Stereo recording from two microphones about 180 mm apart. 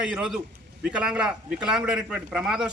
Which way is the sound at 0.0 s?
5° right (ahead or behind).